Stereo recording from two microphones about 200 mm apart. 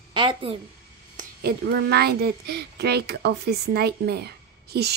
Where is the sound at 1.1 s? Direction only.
55° right (ahead or behind).